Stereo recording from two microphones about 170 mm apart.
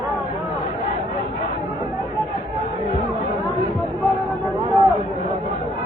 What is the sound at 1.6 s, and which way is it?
Chatter, 20° right (ahead or behind).